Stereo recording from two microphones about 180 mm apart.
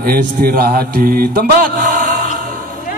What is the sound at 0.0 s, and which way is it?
A man's voice, 55° right (ahead or behind).